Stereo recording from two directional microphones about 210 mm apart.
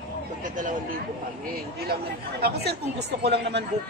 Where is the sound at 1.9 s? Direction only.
50° right (ahead or behind).